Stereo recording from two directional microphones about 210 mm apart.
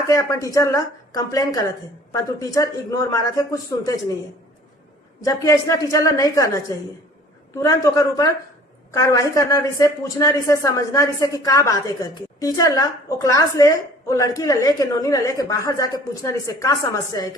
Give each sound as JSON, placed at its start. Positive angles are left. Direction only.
{"t": 0.1, "sound": "speech", "side_deg": 15}
{"t": 5.2, "sound": "speech", "side_deg": 15}